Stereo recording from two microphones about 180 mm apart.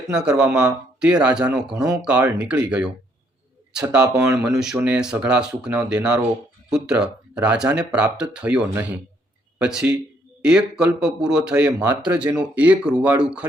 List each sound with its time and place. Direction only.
0.1 s a man's voice: 5° right (ahead or behind)
4.1 s speech: 15° right (ahead or behind)
4.5 s a man's voice: 5° right (ahead or behind)